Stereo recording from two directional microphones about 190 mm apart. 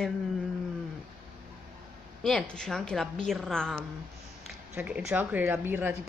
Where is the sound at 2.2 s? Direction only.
5° left (ahead or behind).